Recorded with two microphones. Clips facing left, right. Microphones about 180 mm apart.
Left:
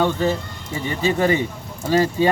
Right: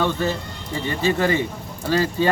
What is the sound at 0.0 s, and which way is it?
Speech, 15° left (ahead or behind).